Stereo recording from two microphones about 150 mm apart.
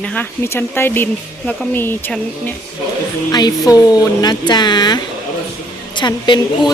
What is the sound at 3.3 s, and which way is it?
A woman's voice, 25° left (ahead or behind).